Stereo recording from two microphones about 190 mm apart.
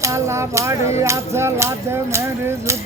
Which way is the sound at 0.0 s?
15° right (ahead or behind).